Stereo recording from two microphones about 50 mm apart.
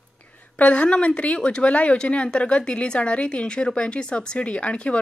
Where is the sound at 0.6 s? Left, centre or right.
Left.